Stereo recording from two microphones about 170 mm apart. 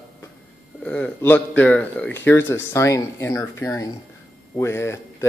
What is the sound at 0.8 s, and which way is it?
Speech, 5° left (ahead or behind).